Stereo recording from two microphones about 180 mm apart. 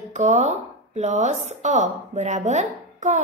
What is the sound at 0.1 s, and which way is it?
A woman's voice, 40° right (ahead or behind).